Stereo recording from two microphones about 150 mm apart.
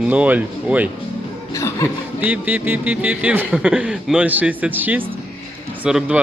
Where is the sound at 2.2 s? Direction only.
10° right (ahead or behind).